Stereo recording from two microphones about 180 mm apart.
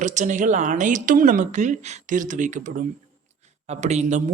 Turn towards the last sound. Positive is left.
turn(degrees=-40)  # may be behind; listen again after turning